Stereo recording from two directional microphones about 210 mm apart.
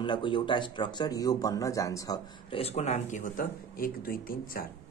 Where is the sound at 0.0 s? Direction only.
20° left (ahead or behind).